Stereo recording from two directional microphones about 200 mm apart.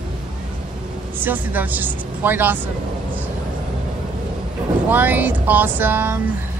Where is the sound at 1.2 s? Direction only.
10° right (ahead or behind).